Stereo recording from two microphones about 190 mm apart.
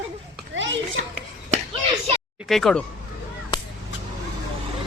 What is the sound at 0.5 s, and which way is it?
Children playing, 80° right.